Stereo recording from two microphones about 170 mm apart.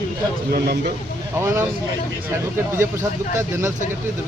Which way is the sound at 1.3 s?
15° right (ahead or behind).